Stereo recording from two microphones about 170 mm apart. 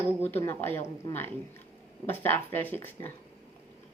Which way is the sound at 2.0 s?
10° left (ahead or behind).